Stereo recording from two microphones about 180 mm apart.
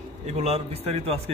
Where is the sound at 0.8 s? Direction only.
35° right (ahead or behind).